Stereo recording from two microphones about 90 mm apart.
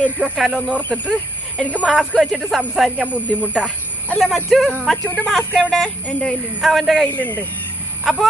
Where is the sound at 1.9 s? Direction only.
5° right (ahead or behind).